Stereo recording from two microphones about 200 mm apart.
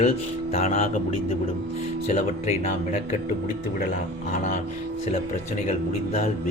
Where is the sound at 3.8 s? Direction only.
40° left (ahead or behind).